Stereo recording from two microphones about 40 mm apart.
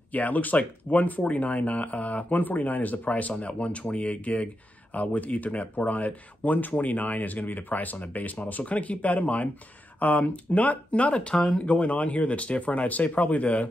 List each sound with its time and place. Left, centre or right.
0.1 s speech: left